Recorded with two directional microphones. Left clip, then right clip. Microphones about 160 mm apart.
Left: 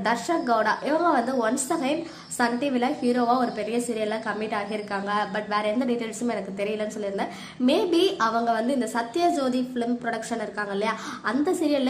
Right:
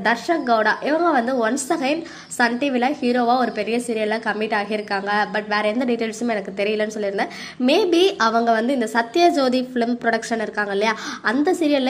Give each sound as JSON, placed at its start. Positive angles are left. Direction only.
{"t": 0.0, "sound": "a woman's voice", "side_deg": -25}